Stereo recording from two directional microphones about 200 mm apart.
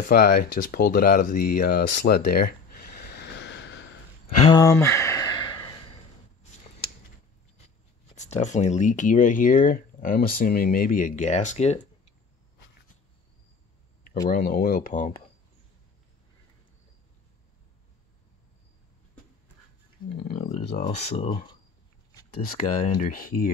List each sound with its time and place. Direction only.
0.0 s speech: 45° left (ahead or behind); by 3.8 s 60° left (ahead or behind)
4.4 s a sound: 20° left (ahead or behind)
8.1 s speech: 35° left (ahead or behind)
14.3 s speech: 45° left (ahead or behind)
20.3 s speech: 35° left (ahead or behind)
21.3 s speech: 25° left (ahead or behind)
22.4 s speech: 40° left (ahead or behind)